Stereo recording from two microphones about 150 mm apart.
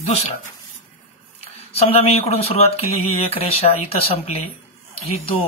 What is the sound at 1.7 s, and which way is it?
Speech, 45° left (ahead or behind).